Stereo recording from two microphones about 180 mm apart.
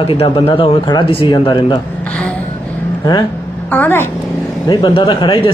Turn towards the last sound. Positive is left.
turn(degrees=30)  # may be behind; listen again after turning